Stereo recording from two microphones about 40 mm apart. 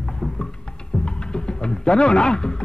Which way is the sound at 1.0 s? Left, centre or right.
Left.